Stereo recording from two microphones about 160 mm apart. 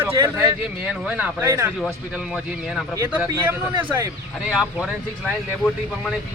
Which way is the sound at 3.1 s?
10° right (ahead or behind).